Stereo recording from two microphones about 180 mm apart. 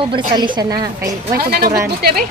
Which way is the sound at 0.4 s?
25° right (ahead or behind).